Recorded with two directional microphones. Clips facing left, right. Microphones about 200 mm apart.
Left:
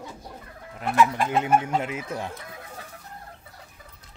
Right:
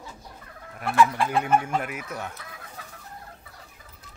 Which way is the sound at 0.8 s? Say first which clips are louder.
Even; 20° left (ahead or behind).